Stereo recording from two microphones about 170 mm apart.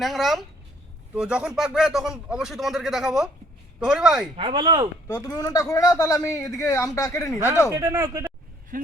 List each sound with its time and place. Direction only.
0.0 s speech: centre (ahead or behind)
4.4 s speech: 30° right (ahead or behind)
5.0 s a man's voice: 20° left (ahead or behind)
7.8 s speech: 20° right (ahead or behind)
8.7 s vehicle: 55° right (ahead or behind)